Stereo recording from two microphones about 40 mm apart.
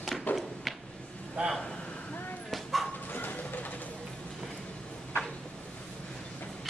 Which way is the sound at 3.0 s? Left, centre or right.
Left.